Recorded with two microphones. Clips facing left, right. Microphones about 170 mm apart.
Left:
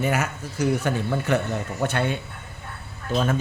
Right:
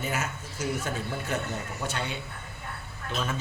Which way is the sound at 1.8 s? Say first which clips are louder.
Left 10 dB; 60° left (ahead or behind).